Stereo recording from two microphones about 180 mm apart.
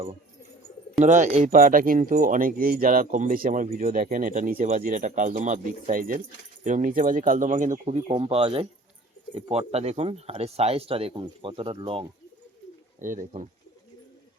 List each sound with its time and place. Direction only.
1.0 s speech: 45° right (ahead or behind)
8.0 s speech: 30° right (ahead or behind)
13.0 s speech: 45° right (ahead or behind)